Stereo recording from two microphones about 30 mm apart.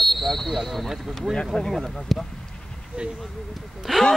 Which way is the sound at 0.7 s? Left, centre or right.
Centre.